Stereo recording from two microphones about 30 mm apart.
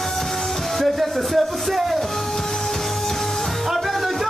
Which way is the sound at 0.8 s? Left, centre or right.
Centre.